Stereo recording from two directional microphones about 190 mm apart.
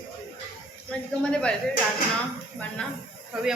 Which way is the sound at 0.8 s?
5° left (ahead or behind).